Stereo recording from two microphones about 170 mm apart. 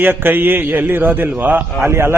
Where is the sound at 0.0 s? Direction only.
10° right (ahead or behind).